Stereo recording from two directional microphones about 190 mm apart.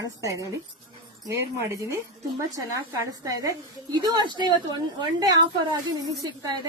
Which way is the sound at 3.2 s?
20° right (ahead or behind).